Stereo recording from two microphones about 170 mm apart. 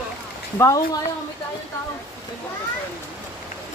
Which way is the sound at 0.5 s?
15° left (ahead or behind).